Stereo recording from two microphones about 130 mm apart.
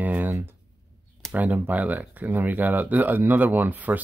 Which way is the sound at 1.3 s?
10° right (ahead or behind).